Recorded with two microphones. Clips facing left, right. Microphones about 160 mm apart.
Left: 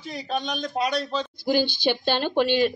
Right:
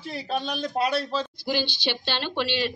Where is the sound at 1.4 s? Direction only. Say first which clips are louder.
Left 8 dB; 50° left (ahead or behind).